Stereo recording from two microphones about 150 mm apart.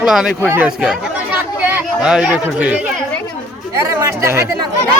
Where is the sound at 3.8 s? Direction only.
20° right (ahead or behind).